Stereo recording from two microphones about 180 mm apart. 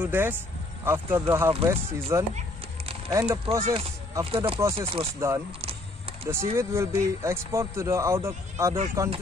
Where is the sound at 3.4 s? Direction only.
30° right (ahead or behind).